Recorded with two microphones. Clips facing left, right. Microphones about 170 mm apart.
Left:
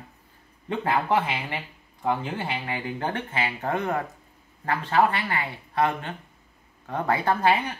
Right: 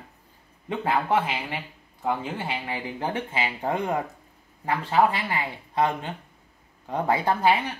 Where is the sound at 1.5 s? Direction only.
5° right (ahead or behind).